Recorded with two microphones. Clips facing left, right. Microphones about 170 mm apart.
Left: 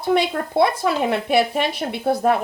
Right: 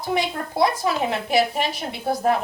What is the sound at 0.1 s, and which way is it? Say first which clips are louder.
Speech: left 5 dB; 60° left (ahead or behind).